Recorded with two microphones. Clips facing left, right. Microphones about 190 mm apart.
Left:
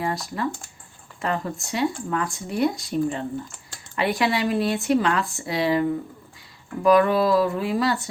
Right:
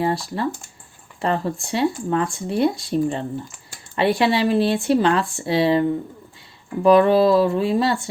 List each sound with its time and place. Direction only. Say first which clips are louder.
0.0 s speech: right 4 dB; 30° right (ahead or behind)
6.8 s speech: right 4 dB; 25° right (ahead or behind)